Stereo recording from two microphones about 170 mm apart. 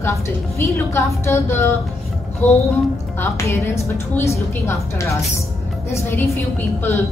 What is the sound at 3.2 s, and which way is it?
A woman's voice, 15° left (ahead or behind).